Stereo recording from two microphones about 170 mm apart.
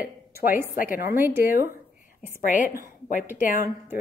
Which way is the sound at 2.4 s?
50° left (ahead or behind).